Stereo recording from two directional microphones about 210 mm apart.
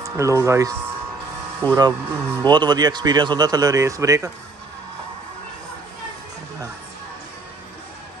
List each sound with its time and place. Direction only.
0.0 s speech: 15° right (ahead or behind)
1.8 s speech: 20° right (ahead or behind)